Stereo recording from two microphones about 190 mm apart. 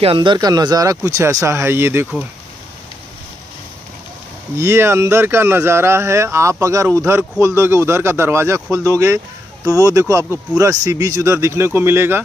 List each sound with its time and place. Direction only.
0.0 s speech: 25° right (ahead or behind)
4.6 s speech: 15° right (ahead or behind)